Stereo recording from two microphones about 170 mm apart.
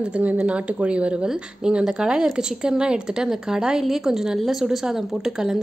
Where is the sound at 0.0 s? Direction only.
5° right (ahead or behind).